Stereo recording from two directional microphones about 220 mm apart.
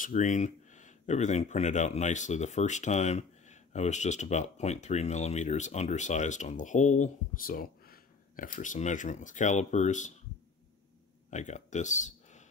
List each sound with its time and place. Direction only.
0.0 s speech: 35° left (ahead or behind)
11.2 s speech: 30° left (ahead or behind)